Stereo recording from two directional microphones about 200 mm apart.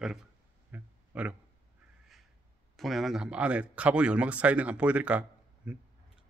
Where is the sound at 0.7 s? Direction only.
5° right (ahead or behind).